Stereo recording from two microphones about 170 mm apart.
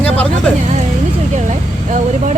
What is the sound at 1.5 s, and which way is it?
Vehicle, 45° right (ahead or behind).